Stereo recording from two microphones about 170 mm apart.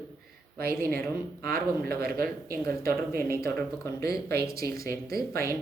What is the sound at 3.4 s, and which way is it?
Speech, 15° left (ahead or behind).